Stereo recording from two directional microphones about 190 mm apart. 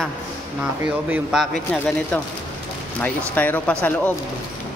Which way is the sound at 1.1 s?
Centre (ahead or behind).